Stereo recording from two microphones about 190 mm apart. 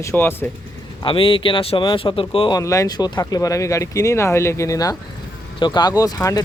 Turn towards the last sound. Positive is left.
turn(degrees=20)  # may be behind; listen again after turning